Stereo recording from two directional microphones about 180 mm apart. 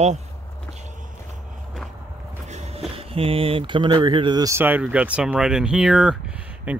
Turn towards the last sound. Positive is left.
turn(degrees=-10)  # may be behind; listen again after turning